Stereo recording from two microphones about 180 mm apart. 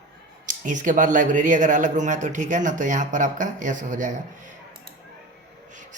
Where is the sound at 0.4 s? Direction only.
45° right (ahead or behind).